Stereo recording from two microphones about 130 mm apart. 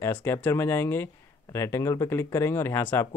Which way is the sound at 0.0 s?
20° left (ahead or behind).